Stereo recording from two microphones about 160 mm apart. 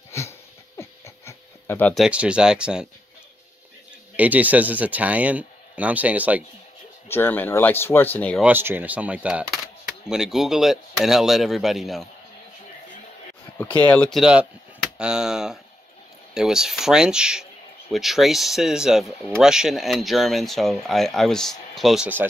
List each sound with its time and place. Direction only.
0.7 s a sound: 15° left (ahead or behind)
2.0 s speech: 5° right (ahead or behind)
4.2 s speech: 10° right (ahead or behind)
7.1 s speech: 15° left (ahead or behind)
8.4 s speech: 10° right (ahead or behind)
13.6 s speech: 10° left (ahead or behind)
14.1 s speech: 5° right (ahead or behind)